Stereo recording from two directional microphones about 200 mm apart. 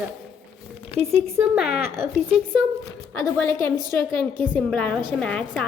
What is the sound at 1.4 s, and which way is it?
Speech, 5° right (ahead or behind).